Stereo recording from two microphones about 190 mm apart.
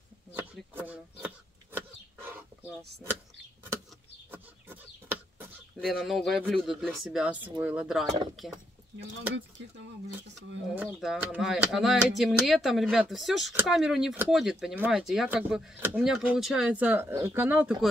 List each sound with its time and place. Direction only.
0.3 s a sound: 10° right (ahead or behind)
2.2 s chicken: 10° right (ahead or behind)
4.3 s chicken: 10° right (ahead or behind)
5.8 s speech: centre (ahead or behind)
9.3 s speech: 70° right (ahead or behind)
10.7 s speech: 10° right (ahead or behind)